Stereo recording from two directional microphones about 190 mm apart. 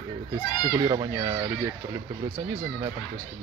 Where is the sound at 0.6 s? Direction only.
20° right (ahead or behind).